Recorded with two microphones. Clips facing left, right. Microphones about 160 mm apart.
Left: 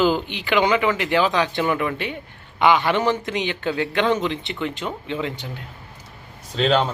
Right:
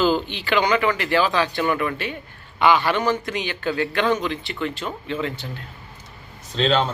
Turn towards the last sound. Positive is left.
turn(degrees=10)  # may be behind; listen again after turning